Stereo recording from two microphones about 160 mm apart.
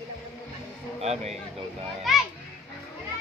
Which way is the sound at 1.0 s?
40° right (ahead or behind).